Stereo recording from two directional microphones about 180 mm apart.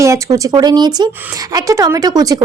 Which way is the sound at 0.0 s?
20° right (ahead or behind).